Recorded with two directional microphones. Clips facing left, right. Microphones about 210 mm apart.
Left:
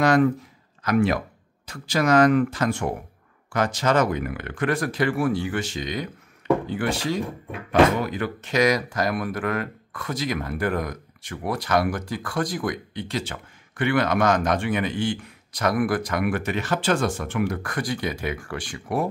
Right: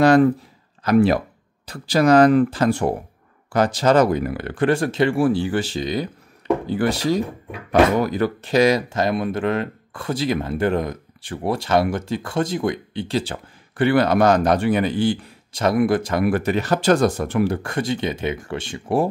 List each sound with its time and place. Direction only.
0.0 s speech: 30° right (ahead or behind)